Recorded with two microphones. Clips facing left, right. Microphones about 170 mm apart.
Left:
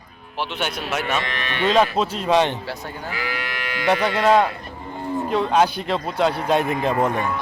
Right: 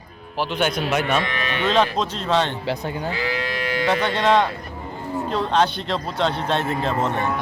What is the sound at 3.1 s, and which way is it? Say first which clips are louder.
Moo: right 4 dB; 30° right (ahead or behind).